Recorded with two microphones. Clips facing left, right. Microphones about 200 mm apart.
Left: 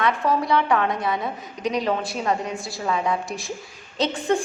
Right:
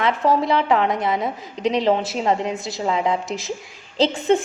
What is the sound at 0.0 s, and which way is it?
A woman's voice, 25° right (ahead or behind).